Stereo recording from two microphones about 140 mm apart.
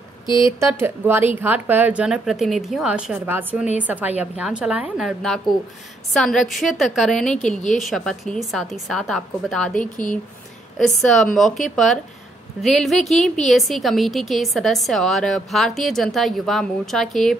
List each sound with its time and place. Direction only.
0.3 s speech: 35° left (ahead or behind)
0.6 s a woman's voice: 20° right (ahead or behind); by 9.8 s 5° left (ahead or behind)
9.8 s speech: 70° left (ahead or behind)
10.8 s a woman's voice: 5° left (ahead or behind)